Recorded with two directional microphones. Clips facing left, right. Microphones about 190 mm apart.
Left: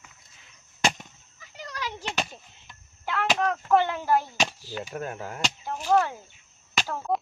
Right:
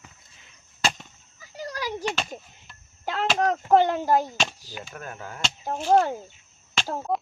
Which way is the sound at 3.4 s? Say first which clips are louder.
Right 4 dB; 40° right (ahead or behind).